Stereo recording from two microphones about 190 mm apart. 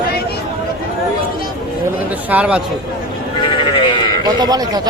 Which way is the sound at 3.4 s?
25° left (ahead or behind).